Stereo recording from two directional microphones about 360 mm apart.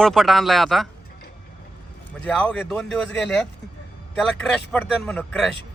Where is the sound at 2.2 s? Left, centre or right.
Centre.